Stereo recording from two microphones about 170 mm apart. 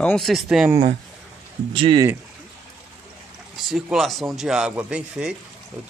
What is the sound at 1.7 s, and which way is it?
Speech, 30° right (ahead or behind).